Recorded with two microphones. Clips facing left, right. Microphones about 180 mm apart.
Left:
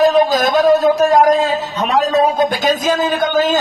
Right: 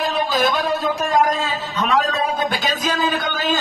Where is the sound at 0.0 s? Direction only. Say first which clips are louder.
Left 8 dB; 45° left (ahead or behind).